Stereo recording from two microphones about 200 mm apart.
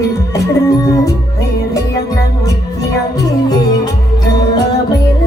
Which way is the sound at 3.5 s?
20° left (ahead or behind).